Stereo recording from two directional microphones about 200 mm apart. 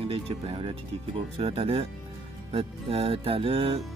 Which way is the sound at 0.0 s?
25° right (ahead or behind).